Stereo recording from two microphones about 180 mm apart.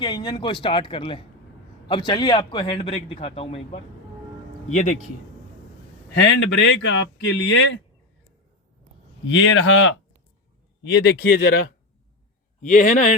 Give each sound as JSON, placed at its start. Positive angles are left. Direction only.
{"t": 0.0, "sound": "a man's voice", "side_deg": 25}
{"t": 4.7, "sound": "speech", "side_deg": 45}
{"t": 6.1, "sound": "speech", "side_deg": 80}
{"t": 9.2, "sound": "speech", "side_deg": 90}
{"t": 11.2, "sound": "speech", "side_deg": 60}
{"t": 12.6, "sound": "speech", "side_deg": 45}